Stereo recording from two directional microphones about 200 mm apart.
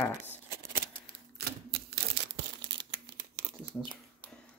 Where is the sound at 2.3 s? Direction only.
65° right (ahead or behind).